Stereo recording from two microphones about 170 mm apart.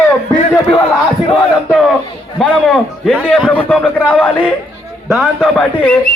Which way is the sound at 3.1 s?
5° left (ahead or behind).